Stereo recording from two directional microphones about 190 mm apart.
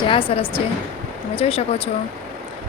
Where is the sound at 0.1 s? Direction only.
30° left (ahead or behind).